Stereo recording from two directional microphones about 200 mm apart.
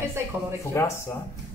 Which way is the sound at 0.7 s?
15° left (ahead or behind).